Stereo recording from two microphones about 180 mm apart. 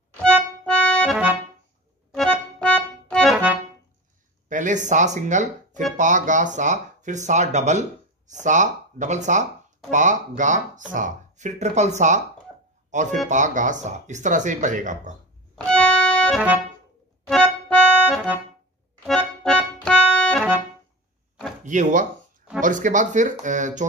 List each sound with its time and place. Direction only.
0.2 s accordion: 5° left (ahead or behind)
2.1 s accordion: 5° left (ahead or behind)
4.5 s speech: 45° right (ahead or behind)
15.5 s music: 5° left (ahead or behind)
17.3 s accordion: 5° left (ahead or behind)
21.6 s speech: 45° right (ahead or behind)